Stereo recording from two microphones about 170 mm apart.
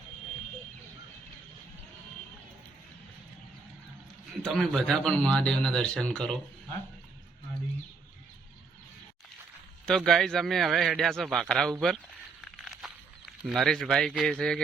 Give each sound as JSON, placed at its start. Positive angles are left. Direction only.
{"t": 4.4, "sound": "a man's voice", "side_deg": 0}
{"t": 9.8, "sound": "a man's voice", "side_deg": 0}
{"t": 12.6, "sound": "a sound", "side_deg": -5}